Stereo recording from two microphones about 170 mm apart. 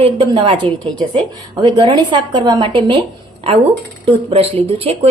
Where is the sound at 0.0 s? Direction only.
30° right (ahead or behind).